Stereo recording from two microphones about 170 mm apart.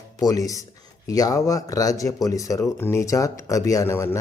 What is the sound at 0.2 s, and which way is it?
Speech, 20° left (ahead or behind).